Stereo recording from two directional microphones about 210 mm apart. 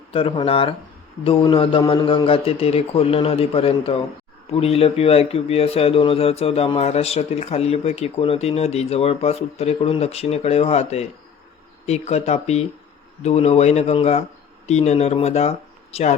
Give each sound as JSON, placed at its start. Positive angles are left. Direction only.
{"t": 0.1, "sound": "speech", "side_deg": 25}